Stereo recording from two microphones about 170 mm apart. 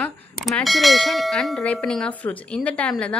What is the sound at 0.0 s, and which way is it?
Bell, 5° left (ahead or behind).